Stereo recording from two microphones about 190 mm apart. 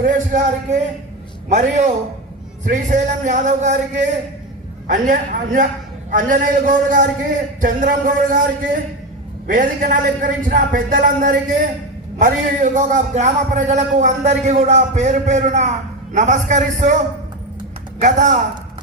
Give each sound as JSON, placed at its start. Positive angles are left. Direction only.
{"t": 0.0, "sound": "a man's voice", "side_deg": -45}
{"t": 4.9, "sound": "a man's voice", "side_deg": -45}
{"t": 18.0, "sound": "a man's voice", "side_deg": -40}